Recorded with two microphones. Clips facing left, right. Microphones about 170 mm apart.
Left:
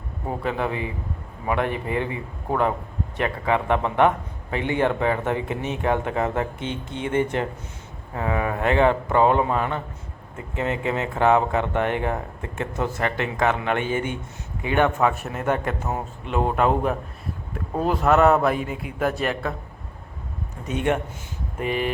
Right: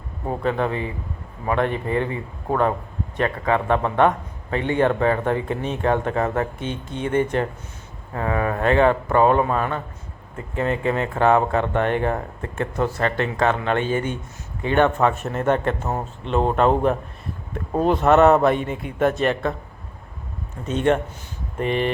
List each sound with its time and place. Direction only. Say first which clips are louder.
0.4 s speech: right 3 dB; 10° left (ahead or behind)
3.2 s a man's voice: right 2 dB; 15° left (ahead or behind)
20.7 s speech: right 4 dB; 10° left (ahead or behind)